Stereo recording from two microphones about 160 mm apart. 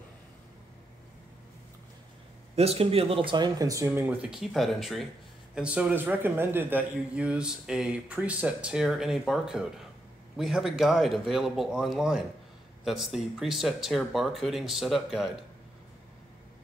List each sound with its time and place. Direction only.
2.5 s a man's voice: 40° right (ahead or behind); by 15.3 s centre (ahead or behind)